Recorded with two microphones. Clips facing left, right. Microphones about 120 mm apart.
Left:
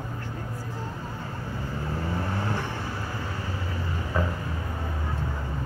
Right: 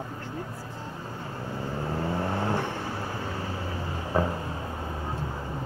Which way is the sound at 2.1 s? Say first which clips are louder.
Right 3 dB; 50° right (ahead or behind).